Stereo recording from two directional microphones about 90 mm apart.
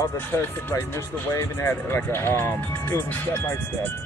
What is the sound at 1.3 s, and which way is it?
Speech, 25° left (ahead or behind).